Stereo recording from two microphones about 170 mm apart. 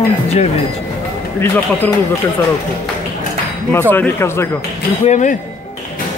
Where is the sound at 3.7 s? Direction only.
10° left (ahead or behind).